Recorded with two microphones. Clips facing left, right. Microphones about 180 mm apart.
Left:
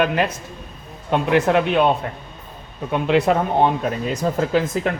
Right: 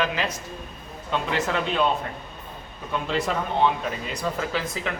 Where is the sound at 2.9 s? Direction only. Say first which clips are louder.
Left 9 dB; 60° left (ahead or behind).